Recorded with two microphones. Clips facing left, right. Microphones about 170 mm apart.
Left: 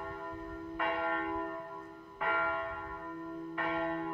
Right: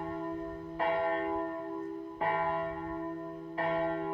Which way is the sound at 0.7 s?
30° right (ahead or behind).